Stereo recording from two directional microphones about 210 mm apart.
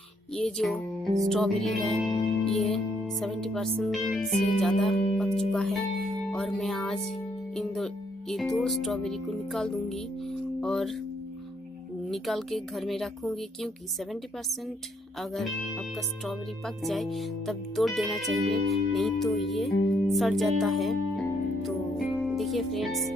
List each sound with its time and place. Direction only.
0.3 s music: 5° left (ahead or behind)
12.1 s music: centre (ahead or behind)
18.3 s music: 90° right
18.7 s music: centre (ahead or behind)